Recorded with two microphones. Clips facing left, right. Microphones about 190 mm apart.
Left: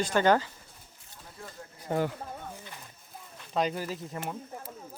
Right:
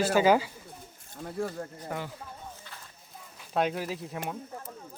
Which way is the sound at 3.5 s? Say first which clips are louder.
Right 1 dB; centre (ahead or behind).